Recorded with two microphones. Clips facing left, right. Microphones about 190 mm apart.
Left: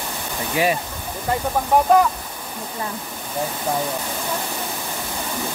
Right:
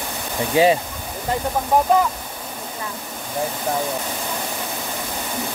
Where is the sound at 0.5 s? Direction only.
25° right (ahead or behind).